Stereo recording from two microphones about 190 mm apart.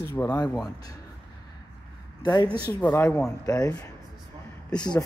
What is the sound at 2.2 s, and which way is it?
Speech, 20° left (ahead or behind).